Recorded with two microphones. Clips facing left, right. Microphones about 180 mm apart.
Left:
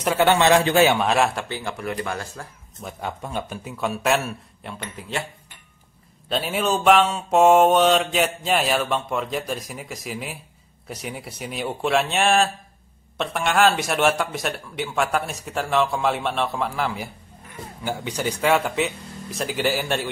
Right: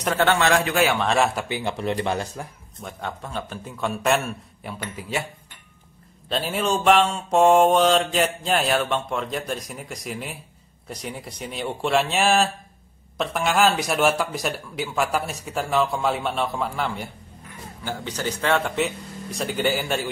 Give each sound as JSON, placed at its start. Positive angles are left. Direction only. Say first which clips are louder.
{"t": 0.0, "sound": "a man's voice", "louder": "left 2 dB", "side_deg": 10}
{"t": 1.0, "sound": "mantra", "louder": "left 1 dB", "side_deg": 0}
{"t": 1.5, "sound": "speech", "louder": "right 3 dB", "side_deg": -20}
{"t": 2.8, "sound": "mantra", "louder": "left 2 dB", "side_deg": 10}
{"t": 6.2, "sound": "mantra", "louder": "left 1 dB", "side_deg": 0}
{"t": 17.8, "sound": "mantra", "louder": "left 2 dB", "side_deg": 15}